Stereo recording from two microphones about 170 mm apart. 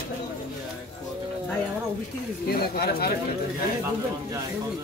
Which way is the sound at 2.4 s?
65° left (ahead or behind).